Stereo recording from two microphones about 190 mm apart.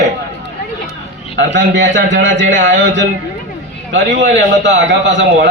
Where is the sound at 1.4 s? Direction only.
70° right (ahead or behind).